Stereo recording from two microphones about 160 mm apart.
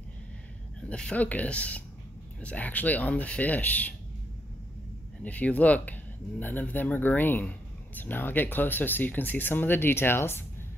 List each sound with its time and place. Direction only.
0.8 s speech: 5° left (ahead or behind)
5.2 s speech: 10° left (ahead or behind)